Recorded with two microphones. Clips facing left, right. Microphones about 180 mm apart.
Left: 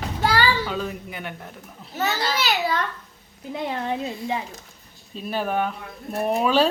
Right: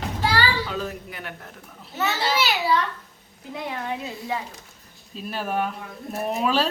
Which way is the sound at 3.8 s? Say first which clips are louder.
Left 4 dB; 30° left (ahead or behind).